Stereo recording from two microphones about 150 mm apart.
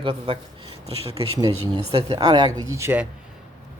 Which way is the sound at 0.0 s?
35° right (ahead or behind).